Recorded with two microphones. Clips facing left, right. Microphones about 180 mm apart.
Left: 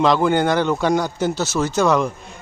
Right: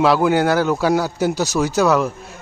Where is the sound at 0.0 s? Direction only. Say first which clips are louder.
Right 1 dB; 5° right (ahead or behind).